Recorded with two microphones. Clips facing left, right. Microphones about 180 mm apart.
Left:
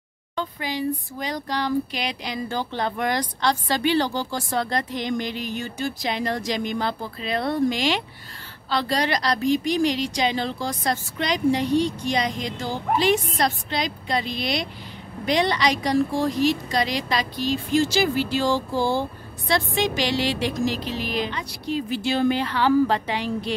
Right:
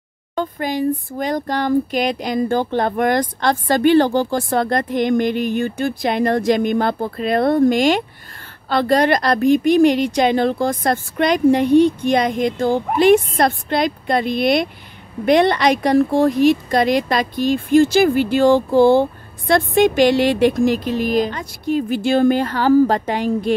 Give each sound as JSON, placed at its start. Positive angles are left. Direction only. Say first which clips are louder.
{"t": 0.4, "sound": "a woman's voice", "louder": "right 7 dB", "side_deg": -50}